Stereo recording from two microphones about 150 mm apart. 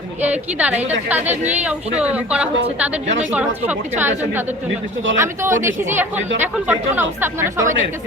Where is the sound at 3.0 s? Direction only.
50° right (ahead or behind).